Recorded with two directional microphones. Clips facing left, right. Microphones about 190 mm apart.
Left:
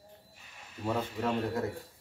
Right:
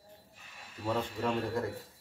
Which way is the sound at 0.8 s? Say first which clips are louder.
Left 1 dB; 5° left (ahead or behind).